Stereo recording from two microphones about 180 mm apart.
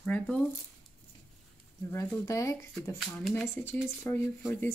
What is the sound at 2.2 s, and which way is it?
Speech, 15° left (ahead or behind).